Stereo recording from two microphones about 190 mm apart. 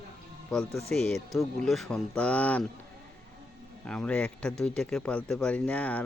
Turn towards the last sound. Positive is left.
turn(degrees=5)  # may be behind; listen again after turning